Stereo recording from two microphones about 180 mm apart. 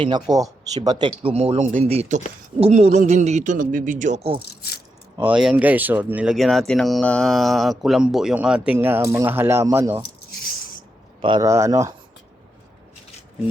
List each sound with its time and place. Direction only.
0.0 s a man's voice: 20° right (ahead or behind); by 4.4 s 35° right (ahead or behind)
4.4 s speech: 60° left (ahead or behind)
5.1 s speech: 10° right (ahead or behind)
11.2 s speech: 25° right (ahead or behind)